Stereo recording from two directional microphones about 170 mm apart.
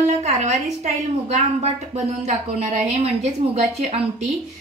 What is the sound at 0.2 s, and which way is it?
A woman's voice, 45° right (ahead or behind).